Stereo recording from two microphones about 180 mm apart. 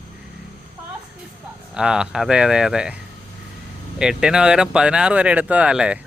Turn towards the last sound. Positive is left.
turn(degrees=-5)  # may be behind; listen again after turning